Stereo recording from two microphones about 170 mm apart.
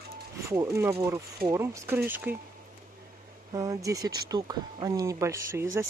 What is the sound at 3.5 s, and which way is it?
Speech, 20° right (ahead or behind).